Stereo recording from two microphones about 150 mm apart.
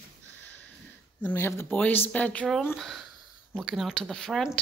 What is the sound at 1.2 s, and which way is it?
A woman's voice, 15° left (ahead or behind).